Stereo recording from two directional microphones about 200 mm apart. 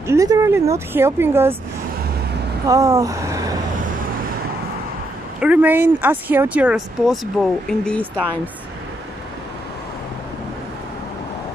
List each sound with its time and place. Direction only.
0.0 s speech: 15° right (ahead or behind)
2.6 s speech: 15° right (ahead or behind)
5.4 s speech: 10° right (ahead or behind)